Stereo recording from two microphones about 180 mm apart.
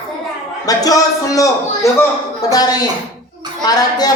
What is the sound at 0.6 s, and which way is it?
Speech, 20° left (ahead or behind).